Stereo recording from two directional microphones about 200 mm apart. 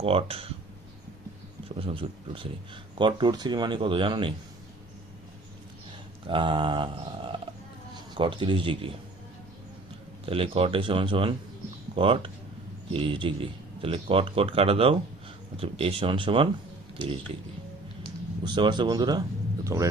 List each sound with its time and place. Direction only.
0.0 s speech: 30° right (ahead or behind)
1.7 s speech: 25° right (ahead or behind)
6.2 s mantra: 25° right (ahead or behind)
8.1 s speech: 25° right (ahead or behind)
10.2 s speech: 25° right (ahead or behind)
18.4 s speech: 25° right (ahead or behind)